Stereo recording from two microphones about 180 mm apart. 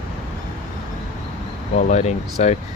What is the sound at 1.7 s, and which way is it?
Speech, 40° left (ahead or behind).